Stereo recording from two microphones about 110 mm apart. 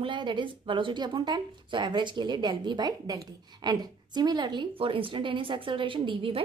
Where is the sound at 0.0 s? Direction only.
45° right (ahead or behind).